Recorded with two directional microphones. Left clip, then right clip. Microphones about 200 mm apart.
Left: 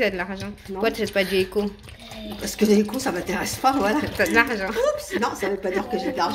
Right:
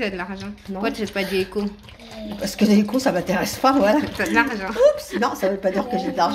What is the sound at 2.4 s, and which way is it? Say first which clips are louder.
Speech: even; 45° right (ahead or behind).